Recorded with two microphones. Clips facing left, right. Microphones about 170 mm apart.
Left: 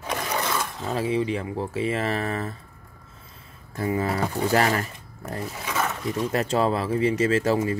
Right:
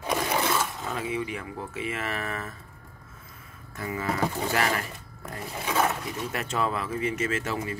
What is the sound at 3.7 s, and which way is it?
Speech, 35° left (ahead or behind).